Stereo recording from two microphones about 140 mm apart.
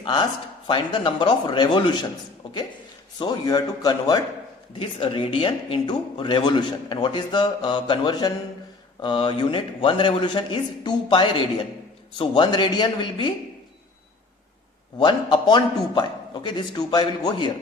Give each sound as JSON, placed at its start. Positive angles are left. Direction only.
{"t": 0.0, "sound": "speech", "side_deg": 35}
{"t": 3.2, "sound": "a man's voice", "side_deg": 30}
{"t": 4.8, "sound": "speech", "side_deg": 40}
{"t": 14.9, "sound": "speech", "side_deg": 35}